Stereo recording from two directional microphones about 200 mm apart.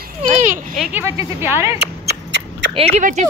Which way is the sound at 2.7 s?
30° right (ahead or behind).